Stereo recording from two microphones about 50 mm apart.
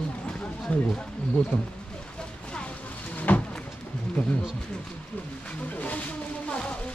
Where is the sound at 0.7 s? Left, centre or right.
Left.